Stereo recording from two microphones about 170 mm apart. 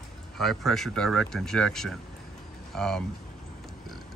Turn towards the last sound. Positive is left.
turn(degrees=5)  # may be behind; listen again after turning